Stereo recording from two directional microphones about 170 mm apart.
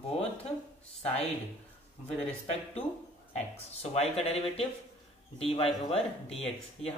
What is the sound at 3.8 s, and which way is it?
Speech, 40° left (ahead or behind).